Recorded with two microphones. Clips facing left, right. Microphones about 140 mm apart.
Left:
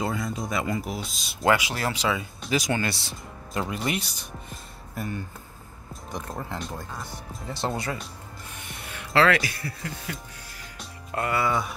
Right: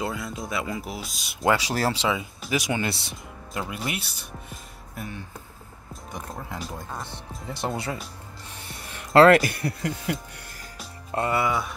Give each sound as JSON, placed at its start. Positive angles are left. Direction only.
{"t": 0.0, "sound": "speech", "side_deg": 0}
{"t": 1.6, "sound": "speech", "side_deg": -35}
{"t": 2.0, "sound": "speech", "side_deg": -25}
{"t": 2.4, "sound": "speech", "side_deg": -10}
{"t": 2.8, "sound": "speech", "side_deg": -20}
{"t": 3.5, "sound": "speech", "side_deg": -5}
{"t": 6.3, "sound": "speech", "side_deg": 0}
{"t": 7.4, "sound": "speech", "side_deg": -20}
{"t": 8.5, "sound": "music", "side_deg": -35}
{"t": 11.1, "sound": "speech", "side_deg": -25}